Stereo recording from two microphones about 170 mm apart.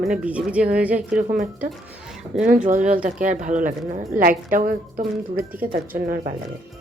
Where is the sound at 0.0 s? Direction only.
5° right (ahead or behind).